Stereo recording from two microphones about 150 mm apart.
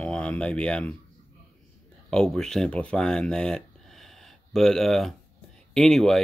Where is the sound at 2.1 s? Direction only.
5° left (ahead or behind).